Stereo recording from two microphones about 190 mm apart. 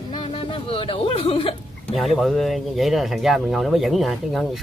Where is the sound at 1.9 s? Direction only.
Centre (ahead or behind).